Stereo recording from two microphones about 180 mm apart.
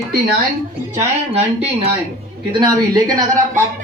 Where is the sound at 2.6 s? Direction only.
20° right (ahead or behind).